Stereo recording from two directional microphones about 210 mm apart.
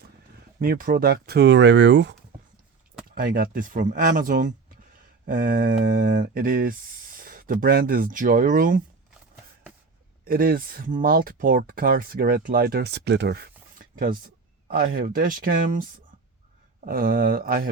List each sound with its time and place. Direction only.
0.6 s speech: 45° right (ahead or behind)
3.2 s speech: 45° right (ahead or behind)
10.2 s speech: 45° right (ahead or behind)